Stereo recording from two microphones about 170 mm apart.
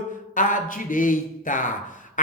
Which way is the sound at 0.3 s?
50° left (ahead or behind).